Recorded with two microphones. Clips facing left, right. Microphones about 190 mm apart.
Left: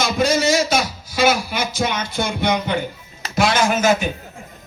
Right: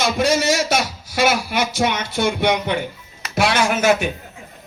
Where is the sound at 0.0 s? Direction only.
70° right (ahead or behind).